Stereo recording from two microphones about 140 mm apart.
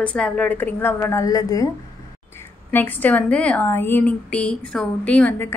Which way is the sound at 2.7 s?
10° left (ahead or behind).